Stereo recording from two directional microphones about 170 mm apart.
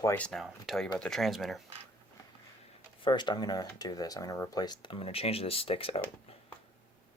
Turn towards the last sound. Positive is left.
turn(degrees=35)  # may be behind; listen again after turning